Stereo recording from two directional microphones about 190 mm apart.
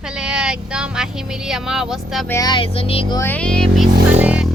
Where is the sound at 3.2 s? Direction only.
10° left (ahead or behind).